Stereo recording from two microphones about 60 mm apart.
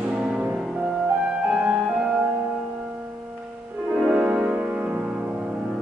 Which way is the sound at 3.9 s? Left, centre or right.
Centre.